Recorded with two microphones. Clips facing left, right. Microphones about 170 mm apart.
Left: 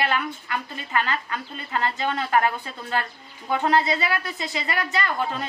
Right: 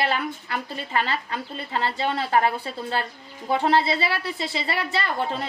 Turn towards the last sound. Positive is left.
turn(degrees=-30)  # may be behind; listen again after turning